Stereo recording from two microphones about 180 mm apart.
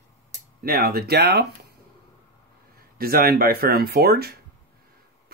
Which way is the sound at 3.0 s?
55° right (ahead or behind).